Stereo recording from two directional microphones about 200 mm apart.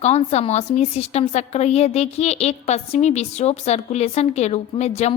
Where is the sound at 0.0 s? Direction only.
35° left (ahead or behind).